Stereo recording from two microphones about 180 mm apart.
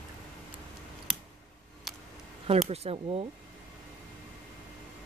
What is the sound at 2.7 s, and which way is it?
Speech, 35° right (ahead or behind).